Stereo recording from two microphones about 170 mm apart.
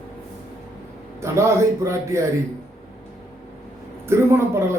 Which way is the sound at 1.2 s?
15° right (ahead or behind).